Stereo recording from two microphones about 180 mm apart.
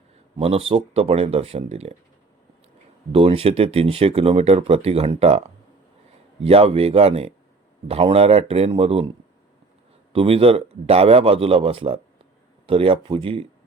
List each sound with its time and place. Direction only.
0.3 s speech: 35° right (ahead or behind)
3.1 s speech: 35° right (ahead or behind)
6.4 s speech: 35° right (ahead or behind)
10.1 s speech: 30° right (ahead or behind)